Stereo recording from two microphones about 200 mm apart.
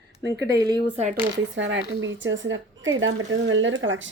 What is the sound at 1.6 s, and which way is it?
A woman's voice, 70° right (ahead or behind).